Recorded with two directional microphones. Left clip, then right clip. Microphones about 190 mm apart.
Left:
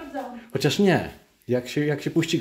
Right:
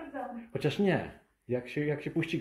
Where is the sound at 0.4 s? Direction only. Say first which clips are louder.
Left 9 dB; 25° left (ahead or behind).